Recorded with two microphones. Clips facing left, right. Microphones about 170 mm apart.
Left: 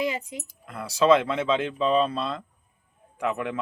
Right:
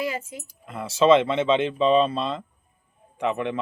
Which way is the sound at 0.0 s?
15° left (ahead or behind).